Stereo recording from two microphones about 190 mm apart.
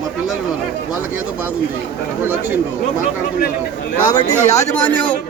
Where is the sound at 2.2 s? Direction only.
10° right (ahead or behind).